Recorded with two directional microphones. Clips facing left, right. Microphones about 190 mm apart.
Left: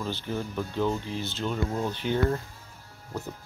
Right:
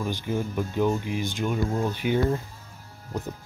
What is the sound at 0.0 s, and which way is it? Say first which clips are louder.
Speech: right 3 dB; 15° right (ahead or behind).